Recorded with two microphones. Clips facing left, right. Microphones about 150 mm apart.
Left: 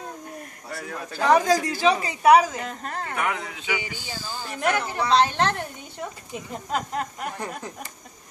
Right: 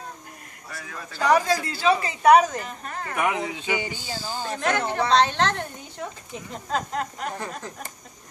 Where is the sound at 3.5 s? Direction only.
30° right (ahead or behind).